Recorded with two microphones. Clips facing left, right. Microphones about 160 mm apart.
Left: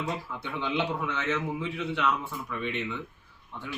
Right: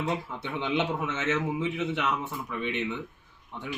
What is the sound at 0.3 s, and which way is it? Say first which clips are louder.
A man's voice: left 1 dB; 20° right (ahead or behind).